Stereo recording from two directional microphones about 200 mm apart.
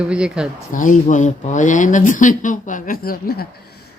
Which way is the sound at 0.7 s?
40° left (ahead or behind).